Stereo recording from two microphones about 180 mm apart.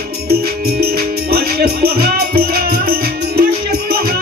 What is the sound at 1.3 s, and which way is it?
Music, 60° right (ahead or behind).